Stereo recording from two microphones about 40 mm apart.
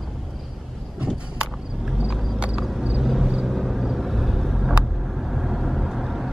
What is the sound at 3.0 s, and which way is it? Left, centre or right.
Vehicle, centre.